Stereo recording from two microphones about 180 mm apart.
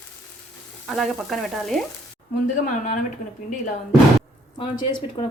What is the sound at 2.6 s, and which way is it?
Speech, 45° left (ahead or behind).